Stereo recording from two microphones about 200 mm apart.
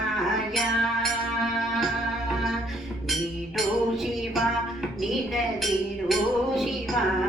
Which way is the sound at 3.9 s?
Centre (ahead or behind).